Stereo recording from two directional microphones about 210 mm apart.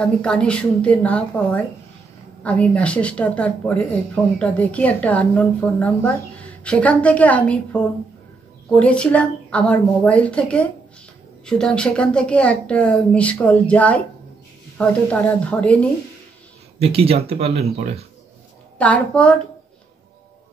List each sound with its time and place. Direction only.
0.0 s a woman's voice: 5° left (ahead or behind)
8.7 s a woman's voice: 5° left (ahead or behind)
16.8 s speech: 30° right (ahead or behind)
18.8 s speech: 5° left (ahead or behind)